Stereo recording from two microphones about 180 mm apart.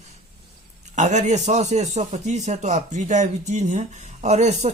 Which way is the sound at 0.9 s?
40° right (ahead or behind).